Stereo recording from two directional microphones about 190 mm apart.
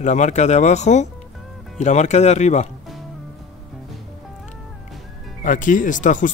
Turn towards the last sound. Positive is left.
turn(degrees=45)  # may be behind; listen again after turning